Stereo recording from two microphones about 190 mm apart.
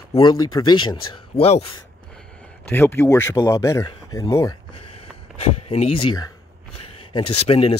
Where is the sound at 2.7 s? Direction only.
10° left (ahead or behind).